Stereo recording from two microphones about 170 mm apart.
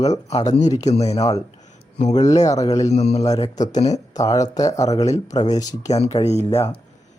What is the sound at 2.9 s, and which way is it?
Speech, 40° left (ahead or behind).